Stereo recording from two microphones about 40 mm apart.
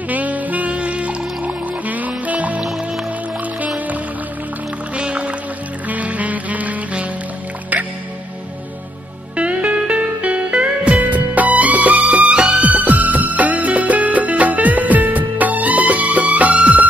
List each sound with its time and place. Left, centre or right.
0.1 s music: right
3.6 s music: right
5.9 s music: right
9.4 s music: right